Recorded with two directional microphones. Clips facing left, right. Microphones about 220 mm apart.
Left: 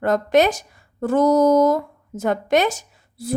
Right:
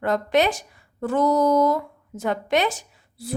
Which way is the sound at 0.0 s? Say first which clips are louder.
Left 4 dB; 45° left (ahead or behind).